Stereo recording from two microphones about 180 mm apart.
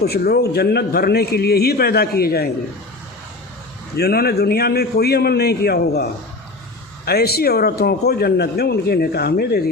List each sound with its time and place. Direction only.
0.0 s a man's voice: 60° left (ahead or behind)
3.9 s a man's voice: 60° left (ahead or behind)